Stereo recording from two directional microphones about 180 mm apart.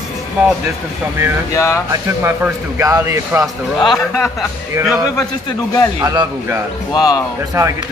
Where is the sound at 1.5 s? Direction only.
15° left (ahead or behind).